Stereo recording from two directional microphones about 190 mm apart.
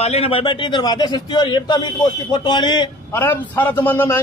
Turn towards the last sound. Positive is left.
turn(degrees=10)  # may be behind; listen again after turning